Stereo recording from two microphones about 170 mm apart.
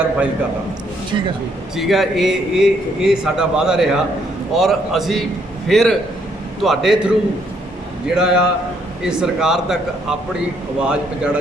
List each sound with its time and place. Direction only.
1.1 s speech: 25° right (ahead or behind)
1.7 s a man's voice: centre (ahead or behind)
8.1 s a man's voice: 5° right (ahead or behind)